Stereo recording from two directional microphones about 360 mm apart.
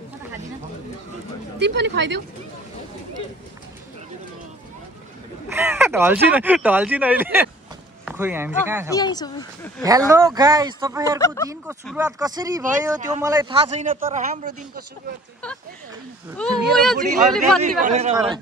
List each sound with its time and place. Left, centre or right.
1.6 s speech: right
5.5 s a sound: centre
6.3 s speech: centre
8.9 s speech: centre
9.8 s speech: centre
11.1 s speech: centre
11.6 s speech: centre; by 14.5 s right
16.3 s speech: centre
17.8 s speech: centre